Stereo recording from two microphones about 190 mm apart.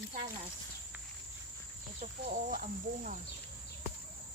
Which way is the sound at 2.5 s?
45° right (ahead or behind).